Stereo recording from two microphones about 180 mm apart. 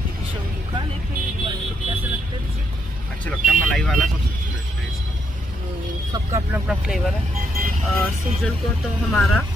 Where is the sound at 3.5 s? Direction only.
Centre (ahead or behind).